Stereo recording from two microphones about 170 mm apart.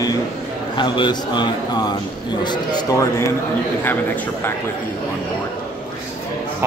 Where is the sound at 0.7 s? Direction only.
25° left (ahead or behind); by 4.2 s 10° left (ahead or behind).